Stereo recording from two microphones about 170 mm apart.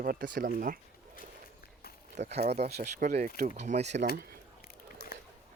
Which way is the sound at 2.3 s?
40° right (ahead or behind).